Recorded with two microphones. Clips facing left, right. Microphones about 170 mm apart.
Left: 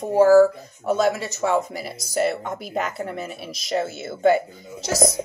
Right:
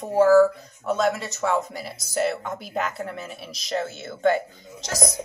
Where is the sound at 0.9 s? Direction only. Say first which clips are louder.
Left 3 dB; 5° left (ahead or behind).